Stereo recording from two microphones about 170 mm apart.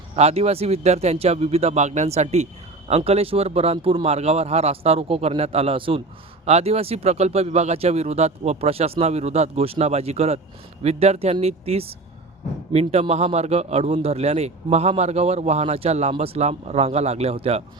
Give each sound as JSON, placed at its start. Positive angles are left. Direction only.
{"t": 0.2, "sound": "speech", "side_deg": -40}